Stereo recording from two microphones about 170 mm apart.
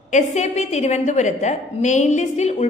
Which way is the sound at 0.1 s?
45° left (ahead or behind).